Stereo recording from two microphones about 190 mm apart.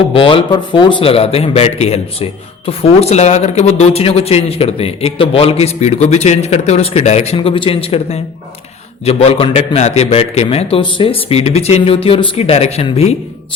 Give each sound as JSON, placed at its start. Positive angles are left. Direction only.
{"t": 0.1, "sound": "speech", "side_deg": 30}